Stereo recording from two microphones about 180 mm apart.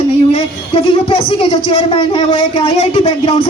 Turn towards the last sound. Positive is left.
turn(degrees=35)  # may be behind; listen again after turning